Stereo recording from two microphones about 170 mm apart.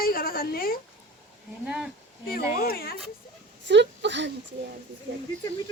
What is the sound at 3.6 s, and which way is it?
Speech, 90° right.